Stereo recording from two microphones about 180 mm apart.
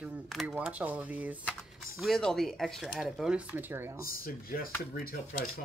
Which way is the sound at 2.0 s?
Centre (ahead or behind).